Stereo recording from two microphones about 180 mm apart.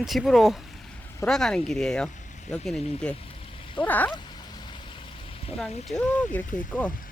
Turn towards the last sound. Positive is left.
turn(degrees=10)  # may be behind; listen again after turning